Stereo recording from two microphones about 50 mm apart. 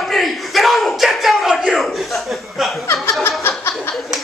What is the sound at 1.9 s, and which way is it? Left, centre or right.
Chuckle, centre.